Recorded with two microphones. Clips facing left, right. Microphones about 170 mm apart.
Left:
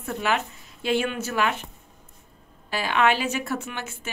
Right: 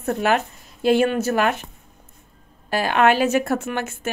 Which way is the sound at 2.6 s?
45° right (ahead or behind).